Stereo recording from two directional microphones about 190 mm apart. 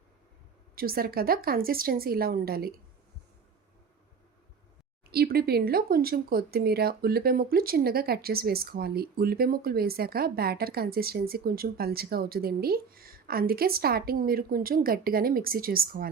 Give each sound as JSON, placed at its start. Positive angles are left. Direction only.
{"t": 0.8, "sound": "speech", "side_deg": -50}
{"t": 5.1, "sound": "speech", "side_deg": -55}